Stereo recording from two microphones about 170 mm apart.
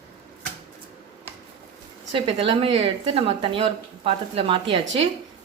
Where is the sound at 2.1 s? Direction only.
30° right (ahead or behind).